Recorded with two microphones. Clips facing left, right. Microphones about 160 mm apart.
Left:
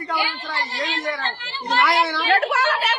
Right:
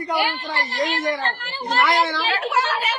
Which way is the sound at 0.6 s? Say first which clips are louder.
Right 4 dB; 45° right (ahead or behind).